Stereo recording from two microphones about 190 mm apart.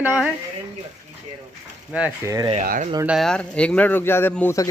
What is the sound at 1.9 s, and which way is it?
Speech, 5° right (ahead or behind).